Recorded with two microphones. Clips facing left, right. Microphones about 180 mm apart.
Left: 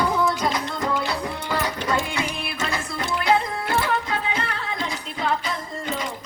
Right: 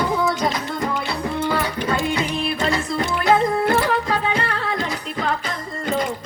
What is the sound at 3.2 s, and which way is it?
Music, 45° right (ahead or behind).